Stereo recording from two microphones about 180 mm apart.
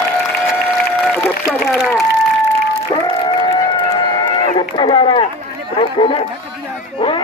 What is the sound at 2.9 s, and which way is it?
Crowd, 25° left (ahead or behind).